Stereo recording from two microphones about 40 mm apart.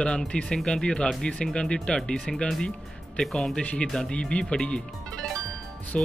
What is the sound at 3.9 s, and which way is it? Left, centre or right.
Speech, left.